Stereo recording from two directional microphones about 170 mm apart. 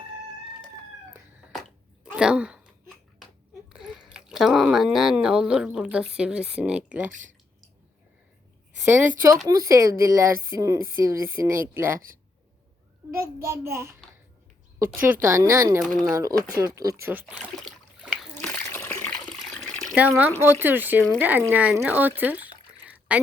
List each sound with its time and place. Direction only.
2.1 s speech: 5° right (ahead or behind)
3.7 s speech: centre (ahead or behind)
7.1 s speech: 45° right (ahead or behind)
8.8 s a woman's voice: 10° right (ahead or behind)
13.1 s speech: 15° right (ahead or behind)
15.0 s speech: 15° right (ahead or behind)
15.8 s speech: centre (ahead or behind)
16.1 s speech: 20° right (ahead or behind)
18.0 s splash: 5° right (ahead or behind)
18.5 s water: 10° left (ahead or behind)
20.0 s speech: 10° right (ahead or behind)
22.9 s a sound: 10° right (ahead or behind)